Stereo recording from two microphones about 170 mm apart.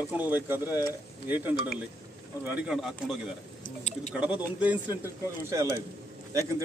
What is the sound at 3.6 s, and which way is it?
Speech, 45° left (ahead or behind).